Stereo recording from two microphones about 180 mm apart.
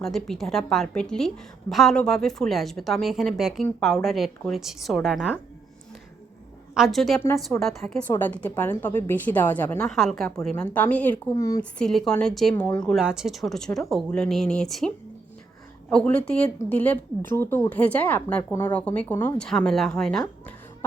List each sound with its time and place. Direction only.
0.0 s a woman's voice: centre (ahead or behind)
6.7 s a woman's voice: centre (ahead or behind); by 11.6 s 15° left (ahead or behind)
11.8 s a woman's voice: 5° left (ahead or behind)